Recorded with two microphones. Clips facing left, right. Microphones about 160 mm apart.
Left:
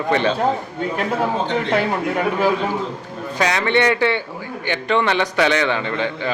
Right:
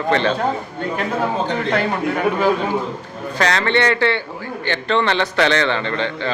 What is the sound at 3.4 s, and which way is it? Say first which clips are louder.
A man's voice: even; 10° left (ahead or behind).